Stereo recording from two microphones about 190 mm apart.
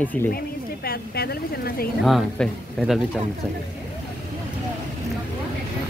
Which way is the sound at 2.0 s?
Centre (ahead or behind).